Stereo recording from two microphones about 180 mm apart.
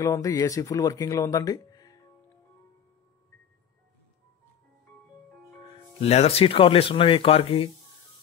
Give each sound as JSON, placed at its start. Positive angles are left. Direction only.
{"t": 0.0, "sound": "speech", "side_deg": 20}
{"t": 5.9, "sound": "speech", "side_deg": 35}